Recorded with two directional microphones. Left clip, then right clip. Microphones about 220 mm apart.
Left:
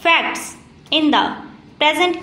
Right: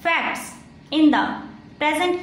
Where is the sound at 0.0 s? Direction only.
20° left (ahead or behind).